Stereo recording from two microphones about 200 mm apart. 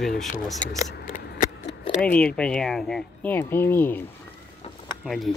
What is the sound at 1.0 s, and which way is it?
Keys jangling, 40° left (ahead or behind).